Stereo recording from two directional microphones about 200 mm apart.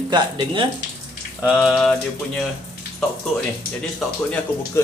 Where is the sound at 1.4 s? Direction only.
5° right (ahead or behind).